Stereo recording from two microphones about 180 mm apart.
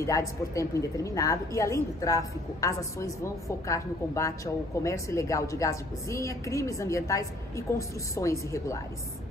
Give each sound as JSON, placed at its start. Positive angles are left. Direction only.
{"t": 0.0, "sound": "a woman's voice", "side_deg": 15}